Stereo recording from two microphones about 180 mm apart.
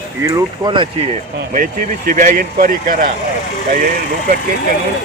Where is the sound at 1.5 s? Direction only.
50° right (ahead or behind).